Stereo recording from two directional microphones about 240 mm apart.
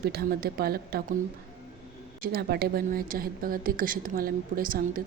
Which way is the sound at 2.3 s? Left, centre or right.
Right.